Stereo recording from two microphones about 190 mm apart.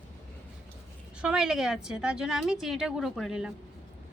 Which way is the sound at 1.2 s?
5° right (ahead or behind).